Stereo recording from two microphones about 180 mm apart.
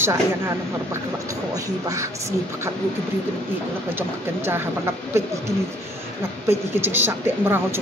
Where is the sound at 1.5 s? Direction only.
20° right (ahead or behind).